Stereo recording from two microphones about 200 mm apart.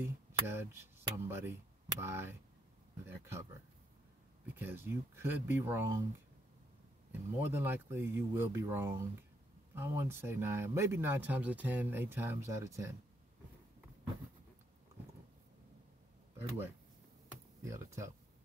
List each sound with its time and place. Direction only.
0.0 s speech: 10° right (ahead or behind)
4.6 s speech: 10° right (ahead or behind)
7.1 s speech: 10° right (ahead or behind)
16.3 s speech: 10° right (ahead or behind)